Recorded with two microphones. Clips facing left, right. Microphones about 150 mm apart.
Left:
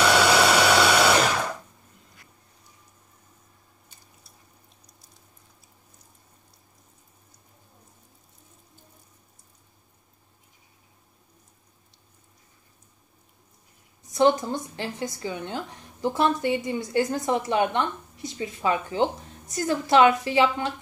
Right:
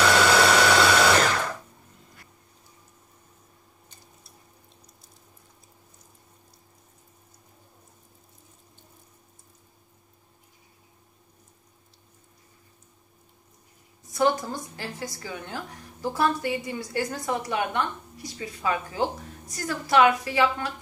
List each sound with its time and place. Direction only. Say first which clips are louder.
0.0 s sewing machine: even; 5° left (ahead or behind)
14.1 s a woman's voice: left 3 dB; 20° left (ahead or behind)